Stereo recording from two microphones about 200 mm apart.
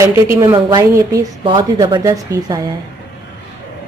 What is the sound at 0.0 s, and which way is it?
A woman's voice, 15° right (ahead or behind).